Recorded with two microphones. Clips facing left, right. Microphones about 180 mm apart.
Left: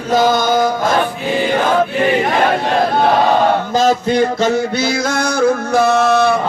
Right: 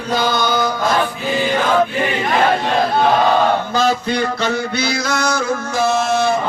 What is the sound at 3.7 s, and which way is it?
Music, 40° left (ahead or behind).